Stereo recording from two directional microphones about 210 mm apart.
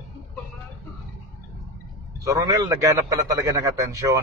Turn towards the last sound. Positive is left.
turn(degrees=-15)  # may be behind; listen again after turning